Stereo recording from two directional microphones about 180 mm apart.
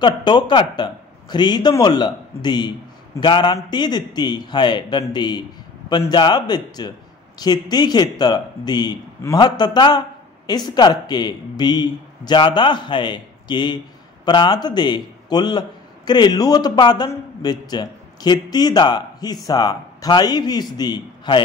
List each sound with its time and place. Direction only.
0.0 s a man's voice: 25° left (ahead or behind)